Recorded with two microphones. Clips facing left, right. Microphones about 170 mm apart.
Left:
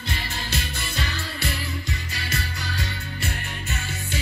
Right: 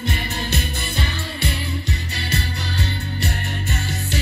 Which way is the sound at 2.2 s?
65° right (ahead or behind).